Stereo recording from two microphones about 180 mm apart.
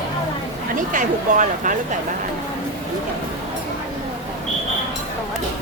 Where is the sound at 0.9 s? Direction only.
45° right (ahead or behind).